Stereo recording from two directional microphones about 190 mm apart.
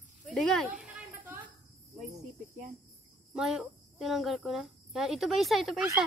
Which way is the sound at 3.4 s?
Centre (ahead or behind).